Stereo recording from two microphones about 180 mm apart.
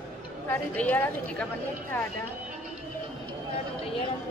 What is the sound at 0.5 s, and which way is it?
A woman's voice, 10° left (ahead or behind).